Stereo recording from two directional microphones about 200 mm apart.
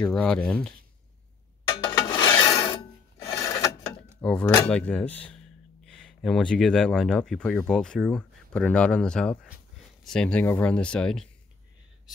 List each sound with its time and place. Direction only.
0.0 s speech: 5° left (ahead or behind)
1.7 s a sound: 25° left (ahead or behind)
3.2 s filing: 15° left (ahead or behind)
4.2 s speech: 5° left (ahead or behind)